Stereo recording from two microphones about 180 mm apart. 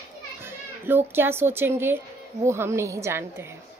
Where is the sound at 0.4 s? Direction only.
10° right (ahead or behind).